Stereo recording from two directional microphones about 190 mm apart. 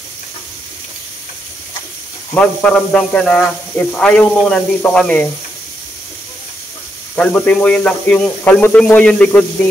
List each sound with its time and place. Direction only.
2.3 s speech: 5° left (ahead or behind)
7.2 s speech: 5° left (ahead or behind)